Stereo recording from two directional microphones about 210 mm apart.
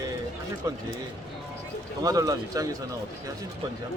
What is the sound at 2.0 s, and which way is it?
Speech, 15° right (ahead or behind).